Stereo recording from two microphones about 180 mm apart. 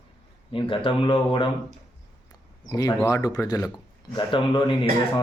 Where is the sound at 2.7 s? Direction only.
20° left (ahead or behind).